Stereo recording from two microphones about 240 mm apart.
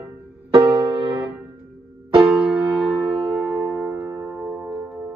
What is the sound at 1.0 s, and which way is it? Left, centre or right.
Music, centre.